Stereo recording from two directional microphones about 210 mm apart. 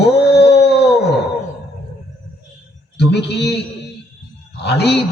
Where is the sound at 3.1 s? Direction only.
55° left (ahead or behind).